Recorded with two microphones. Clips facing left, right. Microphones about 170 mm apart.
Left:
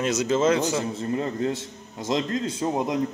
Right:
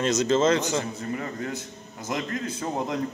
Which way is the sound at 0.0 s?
10° left (ahead or behind).